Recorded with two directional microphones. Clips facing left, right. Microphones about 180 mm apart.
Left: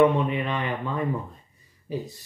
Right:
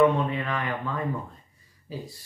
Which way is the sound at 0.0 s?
20° left (ahead or behind).